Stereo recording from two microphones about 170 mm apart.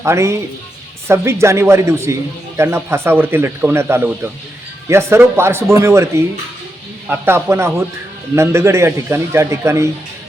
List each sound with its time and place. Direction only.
0.0 s speech: 15° right (ahead or behind)